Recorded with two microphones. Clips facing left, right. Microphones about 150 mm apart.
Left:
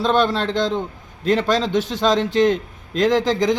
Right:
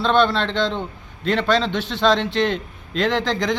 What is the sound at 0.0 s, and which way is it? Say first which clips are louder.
A man's voice: even; 40° left (ahead or behind).